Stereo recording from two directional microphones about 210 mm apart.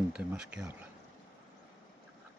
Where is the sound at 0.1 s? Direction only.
5° right (ahead or behind).